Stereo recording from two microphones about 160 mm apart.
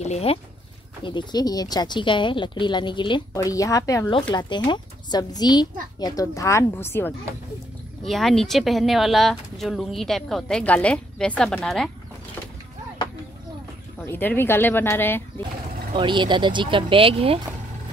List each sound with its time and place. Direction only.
0.0 s speech: 40° left (ahead or behind)
1.0 s speech: 25° left (ahead or behind)
8.0 s speech: centre (ahead or behind)
13.9 s speech: 10° left (ahead or behind)
15.9 s speech: 30° right (ahead or behind)